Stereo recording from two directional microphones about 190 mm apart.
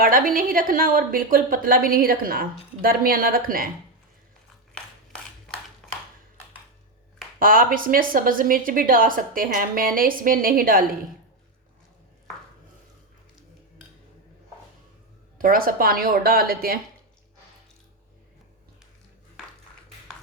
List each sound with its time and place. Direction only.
0.0 s a woman's voice: 50° right (ahead or behind)
7.3 s a woman's voice: 50° right (ahead or behind)
15.4 s a woman's voice: 50° right (ahead or behind)